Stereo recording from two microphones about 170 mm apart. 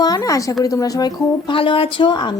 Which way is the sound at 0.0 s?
20° left (ahead or behind).